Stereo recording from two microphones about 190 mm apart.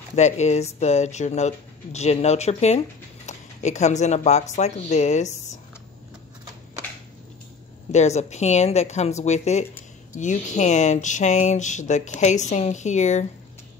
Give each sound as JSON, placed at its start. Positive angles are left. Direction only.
{"t": 0.1, "sound": "speech", "side_deg": 35}
{"t": 7.9, "sound": "speech", "side_deg": 35}